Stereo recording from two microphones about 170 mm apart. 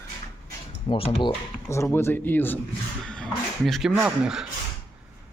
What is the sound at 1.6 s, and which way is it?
Speech, 15° left (ahead or behind).